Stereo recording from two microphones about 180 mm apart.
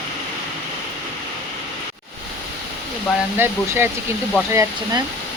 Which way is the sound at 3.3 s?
10° right (ahead or behind).